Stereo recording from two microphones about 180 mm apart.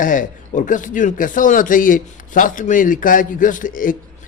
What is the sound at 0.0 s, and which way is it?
A man's voice, 45° left (ahead or behind).